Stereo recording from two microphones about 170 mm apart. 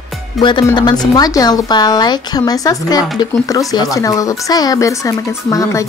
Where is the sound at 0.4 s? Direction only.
25° left (ahead or behind).